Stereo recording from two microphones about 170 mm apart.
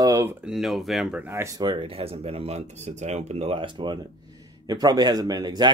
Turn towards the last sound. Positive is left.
turn(degrees=-25)  # may be behind; listen again after turning